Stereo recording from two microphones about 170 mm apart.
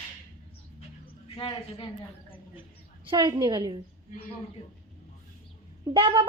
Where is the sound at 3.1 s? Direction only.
25° right (ahead or behind).